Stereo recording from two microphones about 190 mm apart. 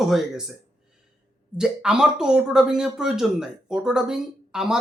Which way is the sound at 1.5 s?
5° right (ahead or behind).